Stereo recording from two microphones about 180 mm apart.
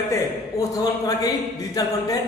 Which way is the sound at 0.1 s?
20° left (ahead or behind).